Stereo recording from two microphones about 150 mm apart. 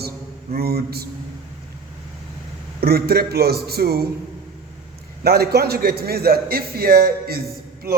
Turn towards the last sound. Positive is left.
turn(degrees=-90)